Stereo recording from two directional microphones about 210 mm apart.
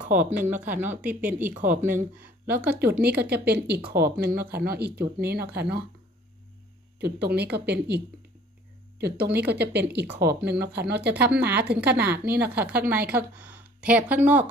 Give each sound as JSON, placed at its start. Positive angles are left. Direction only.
{"t": 0.2, "sound": "a woman's voice", "side_deg": -5}
{"t": 2.9, "sound": "speech", "side_deg": -50}
{"t": 7.0, "sound": "speech", "side_deg": -50}
{"t": 12.1, "sound": "a woman's voice", "side_deg": -10}